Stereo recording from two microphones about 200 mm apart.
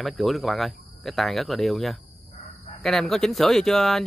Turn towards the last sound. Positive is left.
turn(degrees=0)  # may be behind; listen again after turning